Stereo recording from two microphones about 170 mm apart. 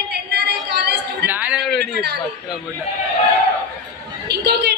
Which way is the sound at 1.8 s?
70° right (ahead or behind).